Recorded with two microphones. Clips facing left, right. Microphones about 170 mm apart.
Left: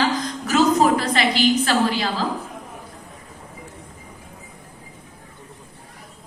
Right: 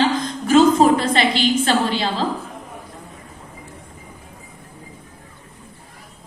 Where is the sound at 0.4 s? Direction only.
25° right (ahead or behind).